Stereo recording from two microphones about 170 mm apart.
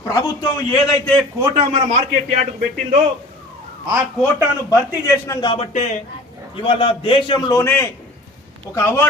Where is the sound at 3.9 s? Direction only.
15° right (ahead or behind).